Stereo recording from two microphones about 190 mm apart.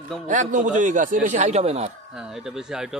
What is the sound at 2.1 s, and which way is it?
Speech, 5° right (ahead or behind).